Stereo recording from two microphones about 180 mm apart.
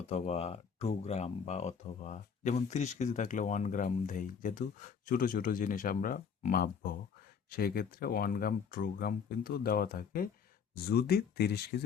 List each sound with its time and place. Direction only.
0.1 s speech: 35° left (ahead or behind); by 11.7 s 65° left (ahead or behind)